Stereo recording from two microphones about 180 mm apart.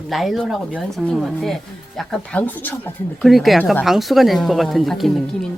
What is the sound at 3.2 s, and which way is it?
A woman's voice, centre (ahead or behind).